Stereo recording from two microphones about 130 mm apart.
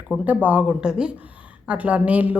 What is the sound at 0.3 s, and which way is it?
Speech, 15° right (ahead or behind).